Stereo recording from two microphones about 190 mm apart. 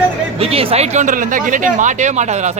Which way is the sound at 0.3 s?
30° right (ahead or behind).